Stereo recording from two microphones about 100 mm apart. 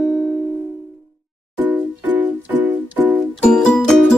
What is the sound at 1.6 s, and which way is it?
Music, 15° right (ahead or behind).